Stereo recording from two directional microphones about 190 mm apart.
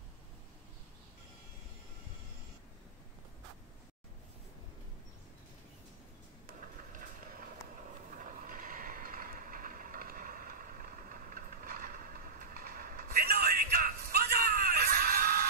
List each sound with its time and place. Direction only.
8.2 s mechanisms: 45° right (ahead or behind)